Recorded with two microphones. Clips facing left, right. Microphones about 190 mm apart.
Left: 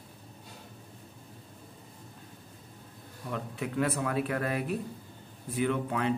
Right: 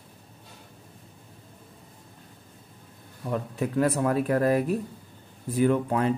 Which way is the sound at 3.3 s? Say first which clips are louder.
Right 6 dB; 40° right (ahead or behind).